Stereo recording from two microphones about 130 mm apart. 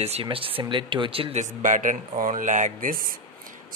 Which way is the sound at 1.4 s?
85° right.